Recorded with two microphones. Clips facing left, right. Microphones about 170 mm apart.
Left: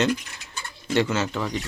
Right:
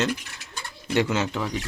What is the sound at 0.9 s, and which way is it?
Speech, 15° right (ahead or behind).